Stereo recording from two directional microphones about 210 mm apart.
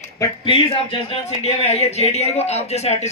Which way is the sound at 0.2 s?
25° left (ahead or behind).